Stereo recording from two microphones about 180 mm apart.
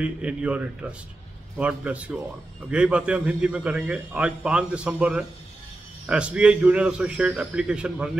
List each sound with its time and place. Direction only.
0.0 s a man's voice: 5° right (ahead or behind)